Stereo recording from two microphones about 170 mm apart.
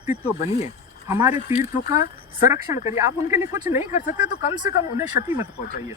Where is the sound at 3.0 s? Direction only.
15° right (ahead or behind).